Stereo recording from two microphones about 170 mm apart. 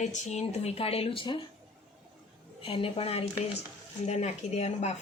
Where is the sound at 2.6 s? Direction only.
35° left (ahead or behind).